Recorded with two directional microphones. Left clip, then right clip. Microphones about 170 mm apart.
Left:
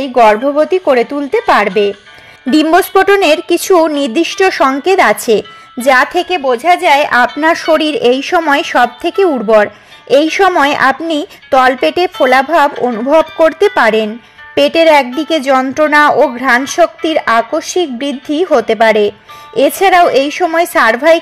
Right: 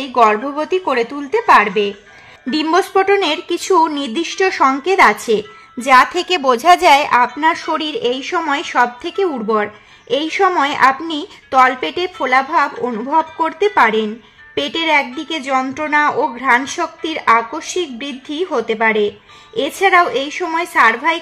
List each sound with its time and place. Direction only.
0.0 s a woman's voice: 25° left (ahead or behind)
6.2 s speech: 10° right (ahead or behind)
7.1 s a woman's voice: 40° left (ahead or behind)